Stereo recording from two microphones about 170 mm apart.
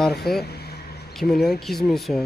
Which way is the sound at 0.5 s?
70° left (ahead or behind).